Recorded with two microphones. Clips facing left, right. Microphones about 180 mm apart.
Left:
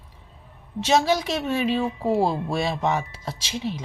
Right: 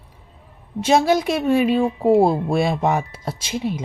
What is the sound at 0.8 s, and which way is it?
Speech, 55° right (ahead or behind).